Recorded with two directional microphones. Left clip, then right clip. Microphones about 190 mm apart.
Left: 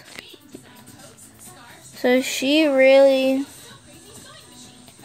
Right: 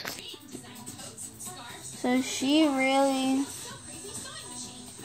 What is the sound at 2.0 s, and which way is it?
Speech, 40° left (ahead or behind).